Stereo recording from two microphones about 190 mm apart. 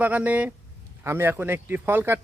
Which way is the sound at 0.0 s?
10° right (ahead or behind).